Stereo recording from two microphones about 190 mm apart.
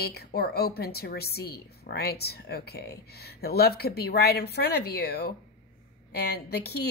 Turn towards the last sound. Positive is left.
turn(degrees=55)  # may be behind; listen again after turning